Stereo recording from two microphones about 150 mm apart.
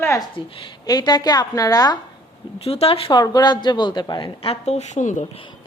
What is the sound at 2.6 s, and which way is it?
A woman's voice, 40° left (ahead or behind).